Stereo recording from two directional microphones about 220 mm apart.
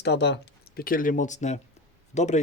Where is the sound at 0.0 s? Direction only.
50° left (ahead or behind).